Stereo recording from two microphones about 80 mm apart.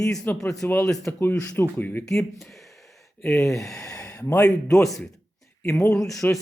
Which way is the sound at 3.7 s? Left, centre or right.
Left.